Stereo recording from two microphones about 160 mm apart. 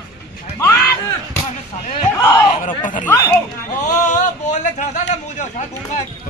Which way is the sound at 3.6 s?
50° left (ahead or behind).